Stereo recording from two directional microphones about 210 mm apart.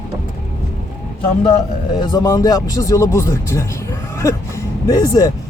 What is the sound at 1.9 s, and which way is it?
Speech, 20° left (ahead or behind).